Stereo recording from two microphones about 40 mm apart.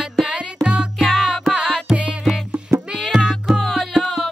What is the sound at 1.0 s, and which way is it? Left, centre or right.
Music, centre.